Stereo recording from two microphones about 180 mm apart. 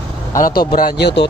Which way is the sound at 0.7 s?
60° left (ahead or behind).